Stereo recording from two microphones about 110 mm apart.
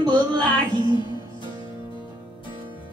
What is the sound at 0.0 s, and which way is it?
Music, 40° right (ahead or behind).